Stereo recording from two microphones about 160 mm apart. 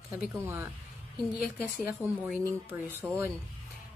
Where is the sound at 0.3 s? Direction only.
15° right (ahead or behind).